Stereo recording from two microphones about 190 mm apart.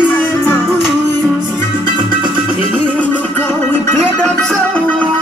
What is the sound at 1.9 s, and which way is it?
Music, 25° right (ahead or behind).